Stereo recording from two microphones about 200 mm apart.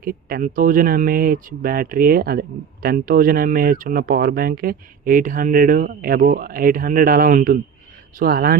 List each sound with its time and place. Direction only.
0.0 s speech: 45° right (ahead or behind)